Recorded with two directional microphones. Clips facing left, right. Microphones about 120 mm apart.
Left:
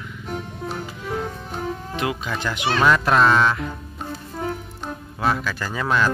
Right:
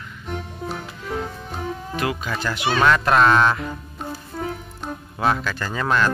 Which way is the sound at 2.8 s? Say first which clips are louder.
Even; centre (ahead or behind).